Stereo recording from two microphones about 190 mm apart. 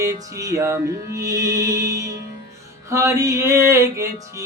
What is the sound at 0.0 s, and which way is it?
Music, 15° right (ahead or behind).